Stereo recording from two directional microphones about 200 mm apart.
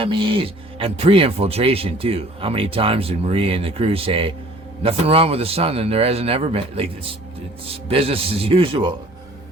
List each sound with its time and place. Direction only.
0.0 s speech: 25° right (ahead or behind)